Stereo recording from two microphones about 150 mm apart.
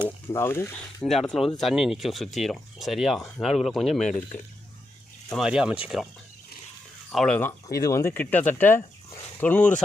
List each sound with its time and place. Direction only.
0.3 s speech: 15° left (ahead or behind)
1.0 s speech: 5° left (ahead or behind)
5.3 s speech: 5° right (ahead or behind)
7.1 s speech: centre (ahead or behind)
7.3 s speech: 20° left (ahead or behind)